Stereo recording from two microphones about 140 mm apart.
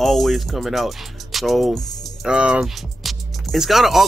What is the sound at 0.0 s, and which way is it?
Speech, centre (ahead or behind).